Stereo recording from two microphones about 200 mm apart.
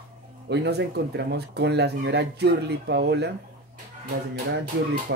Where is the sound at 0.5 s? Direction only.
55° right (ahead or behind).